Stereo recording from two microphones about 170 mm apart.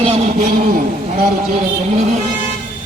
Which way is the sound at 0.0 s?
35° right (ahead or behind).